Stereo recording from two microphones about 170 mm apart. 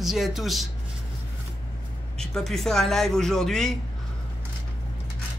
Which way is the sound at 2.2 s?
Centre (ahead or behind).